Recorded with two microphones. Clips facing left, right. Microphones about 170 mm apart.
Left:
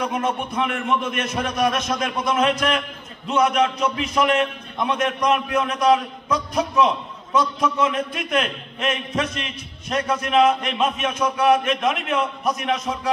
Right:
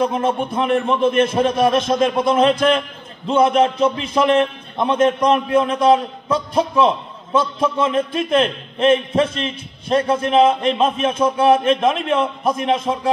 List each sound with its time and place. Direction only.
0.0 s a man's voice: 30° right (ahead or behind)